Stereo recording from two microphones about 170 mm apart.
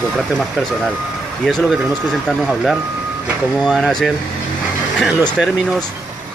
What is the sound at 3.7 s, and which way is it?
Speech, centre (ahead or behind).